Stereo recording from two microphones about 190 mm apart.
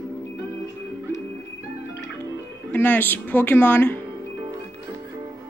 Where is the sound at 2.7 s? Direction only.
10° left (ahead or behind).